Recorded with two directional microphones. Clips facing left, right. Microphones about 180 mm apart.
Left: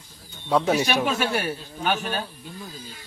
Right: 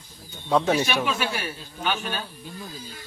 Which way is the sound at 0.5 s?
10° left (ahead or behind).